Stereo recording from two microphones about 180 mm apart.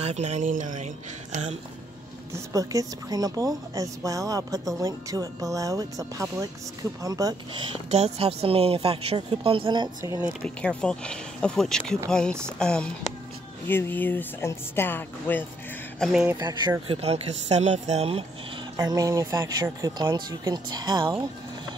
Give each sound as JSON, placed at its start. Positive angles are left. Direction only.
{"t": 0.0, "sound": "a woman's voice", "side_deg": -40}
{"t": 2.5, "sound": "speech", "side_deg": -20}
{"t": 7.9, "sound": "a woman's voice", "side_deg": -35}
{"t": 10.4, "sound": "speech", "side_deg": 5}
{"t": 16.0, "sound": "speech", "side_deg": -5}
{"t": 16.3, "sound": "a woman's voice", "side_deg": -20}
{"t": 18.8, "sound": "speech", "side_deg": -20}